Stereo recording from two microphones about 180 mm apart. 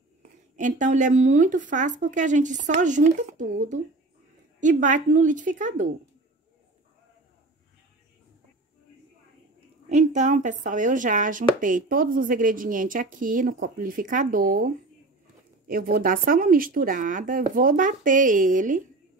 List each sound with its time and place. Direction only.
0.6 s speech: 45° right (ahead or behind)
9.8 s speech: 40° right (ahead or behind)